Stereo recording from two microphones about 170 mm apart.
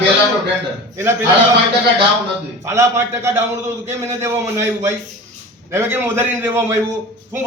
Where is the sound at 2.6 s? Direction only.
15° right (ahead or behind).